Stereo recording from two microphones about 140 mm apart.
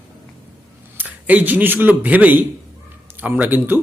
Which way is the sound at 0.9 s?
10° right (ahead or behind).